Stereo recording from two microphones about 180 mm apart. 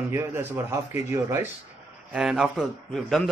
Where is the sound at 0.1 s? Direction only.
15° right (ahead or behind).